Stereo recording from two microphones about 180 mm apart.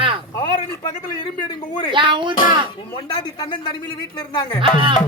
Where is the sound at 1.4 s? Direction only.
25° left (ahead or behind).